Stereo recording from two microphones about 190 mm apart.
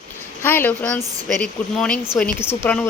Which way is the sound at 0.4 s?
10° left (ahead or behind).